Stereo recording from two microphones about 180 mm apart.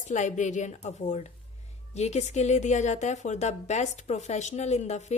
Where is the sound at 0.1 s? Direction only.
40° left (ahead or behind).